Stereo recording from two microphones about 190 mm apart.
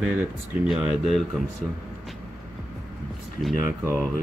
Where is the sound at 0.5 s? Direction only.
30° left (ahead or behind).